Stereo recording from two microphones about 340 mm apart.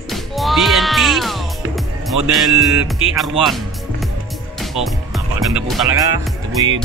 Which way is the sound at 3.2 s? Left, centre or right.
Centre.